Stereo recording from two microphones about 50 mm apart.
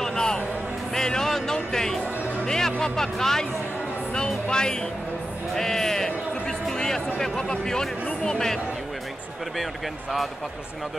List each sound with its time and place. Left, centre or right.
0.0 s a sound: centre
0.9 s music: centre
2.4 s speech: centre
4.5 s speech: centre
7.2 s speech: centre